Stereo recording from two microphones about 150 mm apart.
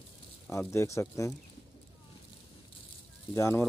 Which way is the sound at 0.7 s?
20° left (ahead or behind).